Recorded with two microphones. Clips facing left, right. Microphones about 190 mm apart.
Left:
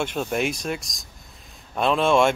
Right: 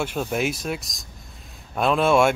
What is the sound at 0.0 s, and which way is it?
Speech, 5° right (ahead or behind).